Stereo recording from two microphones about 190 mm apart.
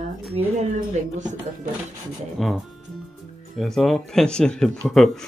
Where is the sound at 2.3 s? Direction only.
Centre (ahead or behind).